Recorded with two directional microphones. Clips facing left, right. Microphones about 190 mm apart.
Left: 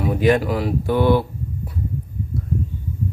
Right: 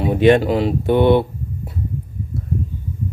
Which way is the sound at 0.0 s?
25° right (ahead or behind).